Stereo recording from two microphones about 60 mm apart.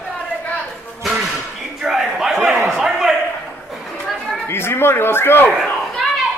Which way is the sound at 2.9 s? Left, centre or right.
Centre.